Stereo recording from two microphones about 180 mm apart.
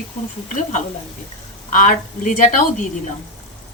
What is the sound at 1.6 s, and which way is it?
Speech, 45° left (ahead or behind).